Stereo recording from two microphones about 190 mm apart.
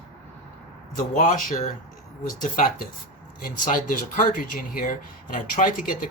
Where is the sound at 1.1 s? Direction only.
40° left (ahead or behind).